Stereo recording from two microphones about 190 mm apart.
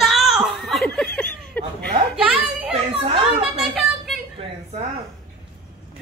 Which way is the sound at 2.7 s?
30° right (ahead or behind).